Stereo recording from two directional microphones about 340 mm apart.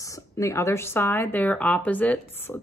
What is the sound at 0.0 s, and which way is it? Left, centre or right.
Speech, centre.